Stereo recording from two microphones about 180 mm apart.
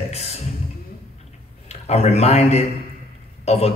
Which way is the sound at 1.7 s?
35° left (ahead or behind).